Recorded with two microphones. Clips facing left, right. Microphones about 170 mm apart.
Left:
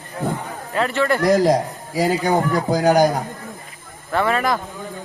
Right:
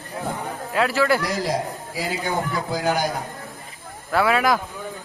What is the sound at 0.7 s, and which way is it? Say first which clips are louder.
Speech: left 1 dB; centre (ahead or behind).